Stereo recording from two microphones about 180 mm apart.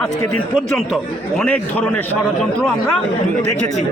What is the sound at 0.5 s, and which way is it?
A man's voice, centre (ahead or behind).